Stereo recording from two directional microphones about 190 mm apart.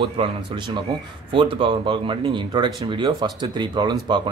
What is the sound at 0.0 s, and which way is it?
Speech, 25° right (ahead or behind).